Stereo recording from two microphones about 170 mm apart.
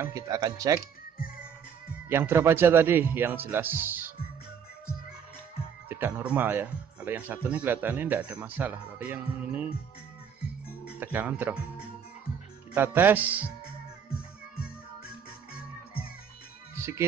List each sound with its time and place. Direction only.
0.0 s speech: 20° right (ahead or behind)
1.1 s music: 60° left (ahead or behind)
2.0 s speech: 15° right (ahead or behind)
5.9 s speech: 10° right (ahead or behind)
11.0 s speech: 10° right (ahead or behind)
12.7 s speech: 10° right (ahead or behind)
14.6 s music: 60° left (ahead or behind)
16.7 s music: 15° right (ahead or behind)